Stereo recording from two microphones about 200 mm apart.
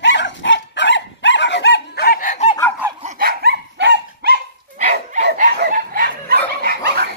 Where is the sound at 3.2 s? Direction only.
50° right (ahead or behind).